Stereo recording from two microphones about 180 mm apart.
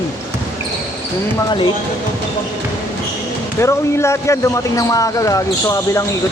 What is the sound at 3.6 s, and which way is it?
Speech, 15° left (ahead or behind).